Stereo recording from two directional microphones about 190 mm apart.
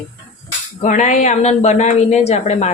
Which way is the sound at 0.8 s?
40° left (ahead or behind).